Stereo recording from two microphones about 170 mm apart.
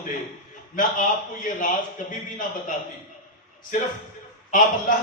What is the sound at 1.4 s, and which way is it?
A man's voice, 50° left (ahead or behind).